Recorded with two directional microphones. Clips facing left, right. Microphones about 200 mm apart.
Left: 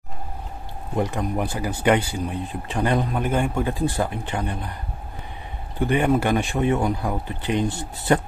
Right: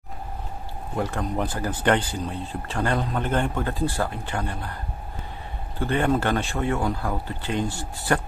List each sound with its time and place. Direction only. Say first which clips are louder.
0.9 s speech: left 2 dB; 15° left (ahead or behind)
5.8 s speech: left 3 dB; 15° left (ahead or behind)